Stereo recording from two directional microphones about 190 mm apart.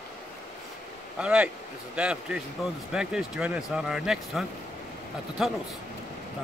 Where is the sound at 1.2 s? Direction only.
5° right (ahead or behind).